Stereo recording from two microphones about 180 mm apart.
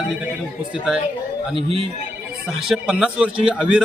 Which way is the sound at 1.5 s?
30° right (ahead or behind).